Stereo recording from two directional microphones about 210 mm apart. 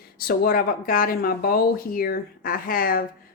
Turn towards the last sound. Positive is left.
turn(degrees=45)  # may be behind; listen again after turning